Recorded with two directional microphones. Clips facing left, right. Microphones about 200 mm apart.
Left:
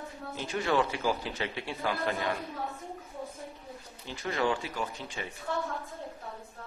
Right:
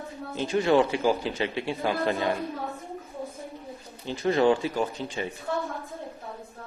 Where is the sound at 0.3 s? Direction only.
25° right (ahead or behind).